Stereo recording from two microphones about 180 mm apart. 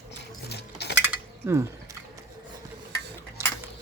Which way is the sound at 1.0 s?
15° right (ahead or behind).